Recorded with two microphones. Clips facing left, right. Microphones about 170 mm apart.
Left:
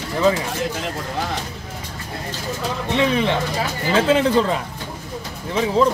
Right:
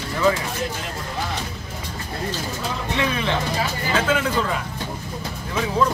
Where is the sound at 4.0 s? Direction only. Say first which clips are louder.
Left 6 dB; 30° left (ahead or behind).